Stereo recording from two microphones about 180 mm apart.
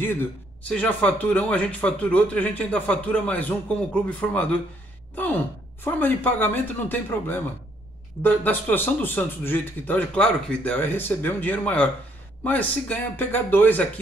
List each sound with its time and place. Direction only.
0.0 s a man's voice: 10° left (ahead or behind)
5.1 s sigh: 10° left (ahead or behind)
5.9 s a man's voice: 10° left (ahead or behind)